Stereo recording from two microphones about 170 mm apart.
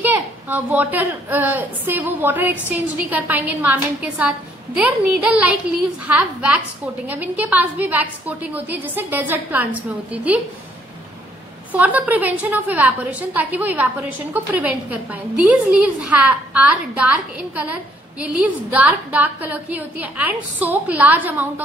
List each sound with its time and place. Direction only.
0.0 s a woman's voice: 10° right (ahead or behind)
11.7 s a woman's voice: 10° right (ahead or behind)